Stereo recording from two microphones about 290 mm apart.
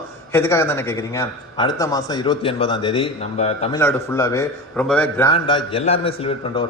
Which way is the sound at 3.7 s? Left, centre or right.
Centre.